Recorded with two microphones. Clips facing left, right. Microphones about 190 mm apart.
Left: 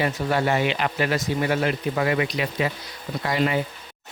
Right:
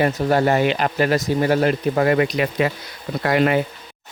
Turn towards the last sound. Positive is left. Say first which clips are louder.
# right 6 dB
turn(degrees=-60)  # may be behind; listen again after turning